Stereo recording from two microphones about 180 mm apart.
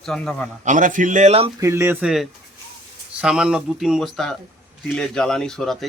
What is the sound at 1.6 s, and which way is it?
Speech, 15° right (ahead or behind).